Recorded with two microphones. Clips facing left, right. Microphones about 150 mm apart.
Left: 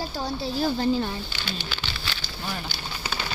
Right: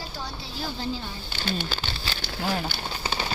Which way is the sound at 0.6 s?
55° left (ahead or behind).